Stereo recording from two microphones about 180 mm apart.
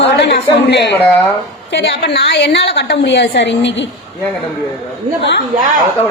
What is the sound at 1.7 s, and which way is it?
A woman's voice, 75° left (ahead or behind).